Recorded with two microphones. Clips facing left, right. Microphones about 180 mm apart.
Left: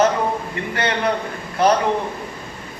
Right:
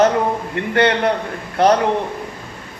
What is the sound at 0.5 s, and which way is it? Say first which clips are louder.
Speech: right 7 dB; 60° right (ahead or behind).